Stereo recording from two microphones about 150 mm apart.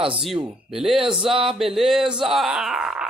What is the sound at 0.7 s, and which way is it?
Speech, 5° right (ahead or behind).